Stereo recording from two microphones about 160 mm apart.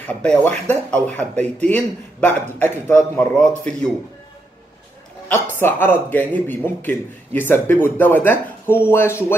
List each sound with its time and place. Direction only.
0.0 s speech: 10° left (ahead or behind)
5.3 s speech: 10° left (ahead or behind)